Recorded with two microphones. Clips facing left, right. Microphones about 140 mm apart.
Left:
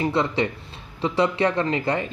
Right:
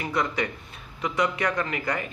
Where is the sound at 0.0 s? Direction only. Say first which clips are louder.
Left 5 dB; 25° left (ahead or behind).